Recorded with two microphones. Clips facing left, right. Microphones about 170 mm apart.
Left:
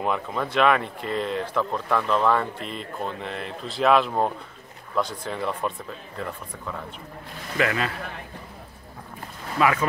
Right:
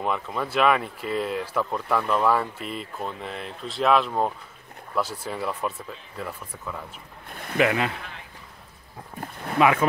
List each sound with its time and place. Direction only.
0.0 s speech: centre (ahead or behind)
7.5 s speech: 20° right (ahead or behind)
9.6 s speech: 20° right (ahead or behind)